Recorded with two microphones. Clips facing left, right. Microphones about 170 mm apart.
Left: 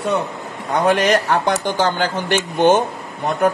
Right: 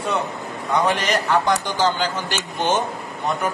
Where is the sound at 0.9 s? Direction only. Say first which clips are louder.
Left 5 dB; 55° left (ahead or behind).